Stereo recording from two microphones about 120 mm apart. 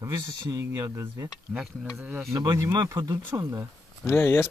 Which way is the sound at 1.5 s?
5° right (ahead or behind).